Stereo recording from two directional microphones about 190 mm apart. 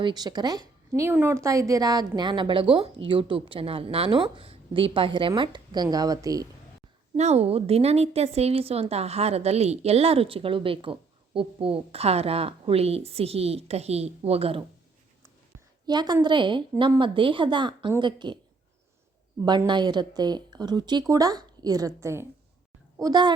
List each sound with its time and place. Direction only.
0.0 s a woman's voice: 20° right (ahead or behind)
7.2 s a woman's voice: 35° right (ahead or behind)
15.9 s a woman's voice: 20° right (ahead or behind)
19.5 s a woman's voice: 25° right (ahead or behind)